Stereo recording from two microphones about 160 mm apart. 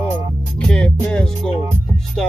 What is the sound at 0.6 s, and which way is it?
Music, 5° left (ahead or behind).